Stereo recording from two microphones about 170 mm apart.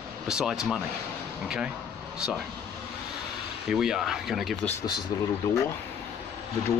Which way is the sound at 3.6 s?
Centre (ahead or behind).